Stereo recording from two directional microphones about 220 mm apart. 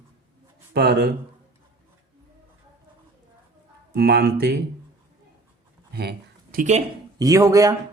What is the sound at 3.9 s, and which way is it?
Speech, 45° right (ahead or behind).